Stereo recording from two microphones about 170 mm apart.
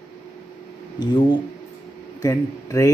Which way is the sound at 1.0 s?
30° left (ahead or behind).